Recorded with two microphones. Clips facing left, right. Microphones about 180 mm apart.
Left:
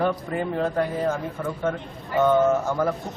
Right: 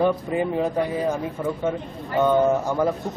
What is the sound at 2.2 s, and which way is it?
Speech, 15° right (ahead or behind).